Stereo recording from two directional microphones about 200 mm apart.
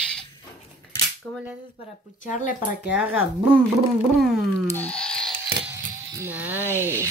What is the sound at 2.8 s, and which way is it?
Speech, 5° right (ahead or behind).